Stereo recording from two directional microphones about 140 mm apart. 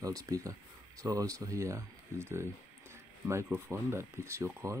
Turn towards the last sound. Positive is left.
turn(degrees=-20)  # may be behind; listen again after turning